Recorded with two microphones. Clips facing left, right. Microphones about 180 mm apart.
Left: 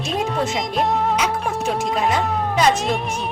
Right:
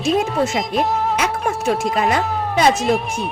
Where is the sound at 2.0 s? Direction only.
65° right (ahead or behind).